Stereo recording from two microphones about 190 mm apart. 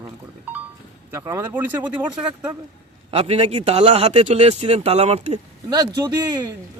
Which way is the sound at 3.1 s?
30° right (ahead or behind).